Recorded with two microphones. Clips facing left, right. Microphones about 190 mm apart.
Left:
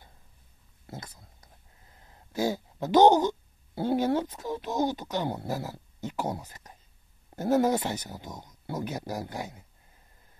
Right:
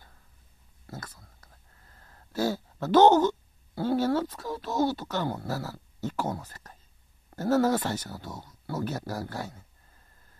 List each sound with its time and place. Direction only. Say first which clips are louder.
0.8 s speech: even; 20° left (ahead or behind)